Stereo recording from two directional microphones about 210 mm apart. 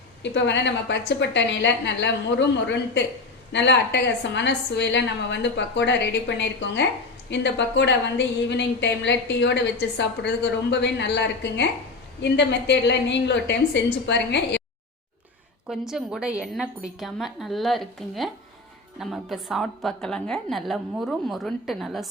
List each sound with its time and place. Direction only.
0.2 s a woman's voice: 55° left (ahead or behind)
15.7 s a woman's voice: centre (ahead or behind)